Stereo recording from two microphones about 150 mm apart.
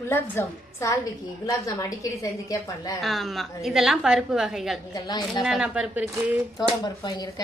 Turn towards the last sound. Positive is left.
turn(degrees=25)  # may be behind; listen again after turning